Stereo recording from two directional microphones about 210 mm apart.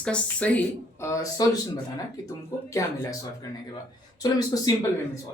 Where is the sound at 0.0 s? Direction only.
5° left (ahead or behind).